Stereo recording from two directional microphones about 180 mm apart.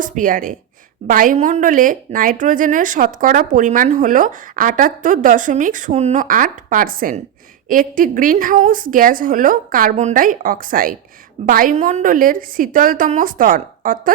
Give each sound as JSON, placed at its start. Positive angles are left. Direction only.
{"t": 0.0, "sound": "a woman's voice", "side_deg": -45}